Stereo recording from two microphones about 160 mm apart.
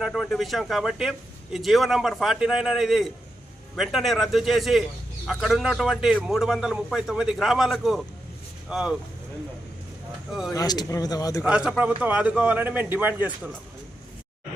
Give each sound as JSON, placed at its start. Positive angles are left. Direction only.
{"t": 0.0, "sound": "a man's voice", "side_deg": 0}
{"t": 10.5, "sound": "speech", "side_deg": 25}
{"t": 11.4, "sound": "a man's voice", "side_deg": -5}